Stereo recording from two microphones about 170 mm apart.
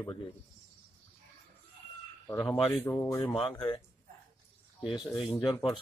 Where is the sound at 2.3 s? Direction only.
10° left (ahead or behind).